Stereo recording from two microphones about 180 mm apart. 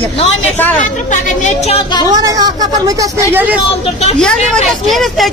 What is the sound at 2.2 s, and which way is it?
Speech, 20° right (ahead or behind).